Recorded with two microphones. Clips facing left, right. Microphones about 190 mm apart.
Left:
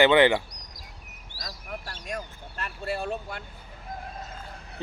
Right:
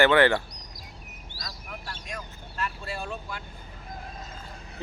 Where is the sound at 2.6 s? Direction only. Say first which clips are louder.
Left 2 dB; 65° left (ahead or behind).